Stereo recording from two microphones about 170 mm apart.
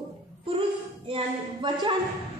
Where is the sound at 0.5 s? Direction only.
30° right (ahead or behind).